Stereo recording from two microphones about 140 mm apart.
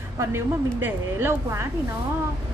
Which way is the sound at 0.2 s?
15° right (ahead or behind).